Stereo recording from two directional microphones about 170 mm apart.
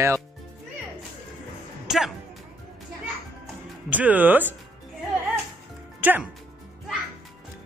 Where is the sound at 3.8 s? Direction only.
10° right (ahead or behind).